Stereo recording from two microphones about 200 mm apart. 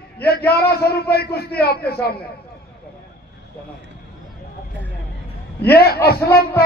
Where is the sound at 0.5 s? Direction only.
50° left (ahead or behind).